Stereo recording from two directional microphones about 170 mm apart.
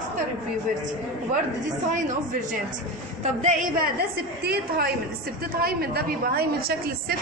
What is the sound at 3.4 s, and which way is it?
A woman's voice, 55° right (ahead or behind).